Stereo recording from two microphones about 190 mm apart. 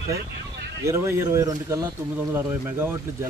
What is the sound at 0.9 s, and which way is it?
Speech, 15° right (ahead or behind).